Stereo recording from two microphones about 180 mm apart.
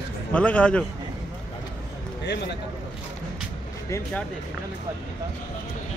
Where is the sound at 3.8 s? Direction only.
15° left (ahead or behind).